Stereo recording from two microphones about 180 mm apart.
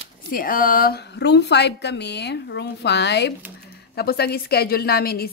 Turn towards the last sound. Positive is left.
turn(degrees=60)  # may be behind; listen again after turning